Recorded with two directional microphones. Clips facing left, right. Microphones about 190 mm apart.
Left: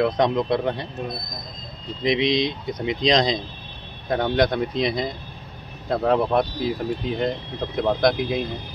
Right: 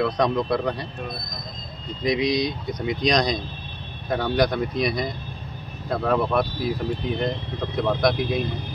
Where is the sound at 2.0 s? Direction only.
25° left (ahead or behind).